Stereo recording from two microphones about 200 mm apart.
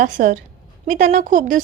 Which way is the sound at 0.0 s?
40° right (ahead or behind).